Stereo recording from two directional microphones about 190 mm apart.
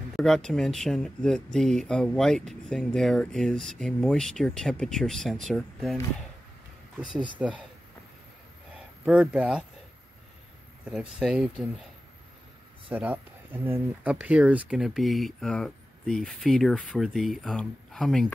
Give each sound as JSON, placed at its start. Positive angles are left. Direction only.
{"t": 0.2, "sound": "speech", "side_deg": 0}
{"t": 7.3, "sound": "speech", "side_deg": -5}
{"t": 8.7, "sound": "speech", "side_deg": -5}
{"t": 10.9, "sound": "speech", "side_deg": -5}
{"t": 12.9, "sound": "speech", "side_deg": -10}